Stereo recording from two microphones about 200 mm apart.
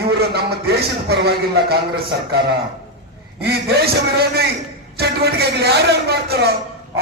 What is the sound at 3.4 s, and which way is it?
Speech, 50° right (ahead or behind).